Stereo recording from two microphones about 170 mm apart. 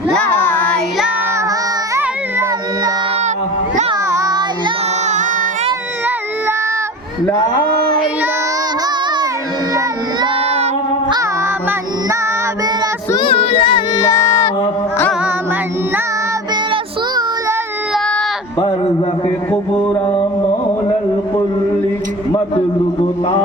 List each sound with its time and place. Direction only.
0.2 s child singing: 10° left (ahead or behind)
4.1 s child singing: 20° right (ahead or behind)
13.1 s child singing: 35° left (ahead or behind); by 14.5 s 15° left (ahead or behind)